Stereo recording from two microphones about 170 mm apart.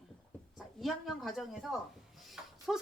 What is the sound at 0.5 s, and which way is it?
Speech, centre (ahead or behind).